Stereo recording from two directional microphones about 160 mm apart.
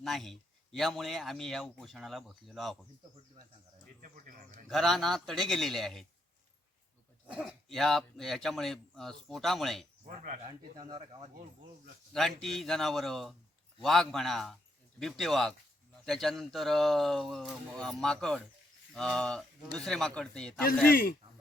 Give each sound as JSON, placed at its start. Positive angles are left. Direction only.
{"t": 0.0, "sound": "a man's voice", "side_deg": 0}
{"t": 4.0, "sound": "speech", "side_deg": -60}
{"t": 4.7, "sound": "a man's voice", "side_deg": 0}
{"t": 7.3, "sound": "a man's voice", "side_deg": 0}
{"t": 10.8, "sound": "speech", "side_deg": -25}
{"t": 12.1, "sound": "a man's voice", "side_deg": 0}
{"t": 20.9, "sound": "a man's voice", "side_deg": 65}